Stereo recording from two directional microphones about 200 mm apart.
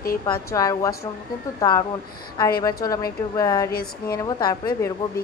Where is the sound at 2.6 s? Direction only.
20° left (ahead or behind).